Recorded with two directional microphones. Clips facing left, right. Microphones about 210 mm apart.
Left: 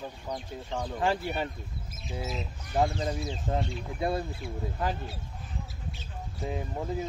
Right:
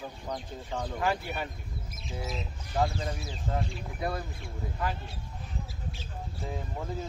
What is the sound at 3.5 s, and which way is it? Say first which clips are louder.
Speech: left 2 dB; 20° left (ahead or behind).